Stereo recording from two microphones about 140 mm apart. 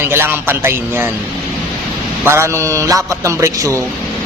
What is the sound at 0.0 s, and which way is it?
Speech, 15° right (ahead or behind).